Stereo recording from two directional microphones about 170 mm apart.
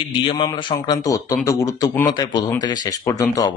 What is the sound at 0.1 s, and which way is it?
A man's voice, 30° left (ahead or behind).